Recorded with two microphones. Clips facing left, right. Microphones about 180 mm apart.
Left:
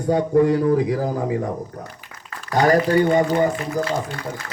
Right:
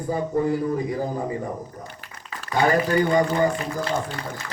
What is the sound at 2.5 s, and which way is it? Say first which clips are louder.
Speech: left 4 dB; 40° left (ahead or behind).